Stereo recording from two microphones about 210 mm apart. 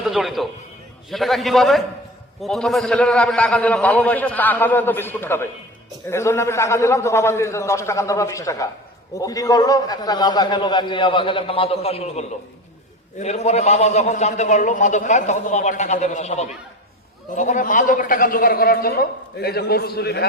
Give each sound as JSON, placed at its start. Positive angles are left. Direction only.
{"t": 0.0, "sound": "a man's voice", "side_deg": 0}